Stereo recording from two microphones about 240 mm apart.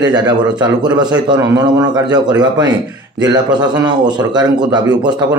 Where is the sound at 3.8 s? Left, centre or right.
Centre.